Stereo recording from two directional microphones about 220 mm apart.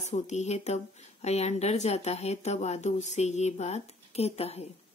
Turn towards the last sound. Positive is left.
turn(degrees=30)  # may be behind; listen again after turning